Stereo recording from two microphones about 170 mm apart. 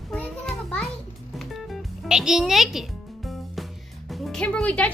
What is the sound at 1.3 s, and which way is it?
Music, centre (ahead or behind).